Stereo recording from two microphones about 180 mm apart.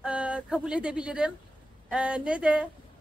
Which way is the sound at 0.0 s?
5° right (ahead or behind).